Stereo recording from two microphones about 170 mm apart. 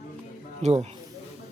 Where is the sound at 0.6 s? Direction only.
40° right (ahead or behind).